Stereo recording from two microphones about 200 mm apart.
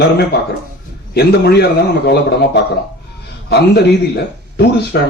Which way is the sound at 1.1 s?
55° left (ahead or behind).